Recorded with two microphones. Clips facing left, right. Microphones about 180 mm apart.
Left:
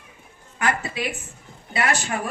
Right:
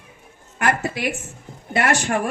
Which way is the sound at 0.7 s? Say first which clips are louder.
Right 4 dB; 45° right (ahead or behind).